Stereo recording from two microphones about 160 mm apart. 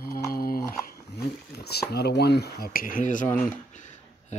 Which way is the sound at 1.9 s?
90° left.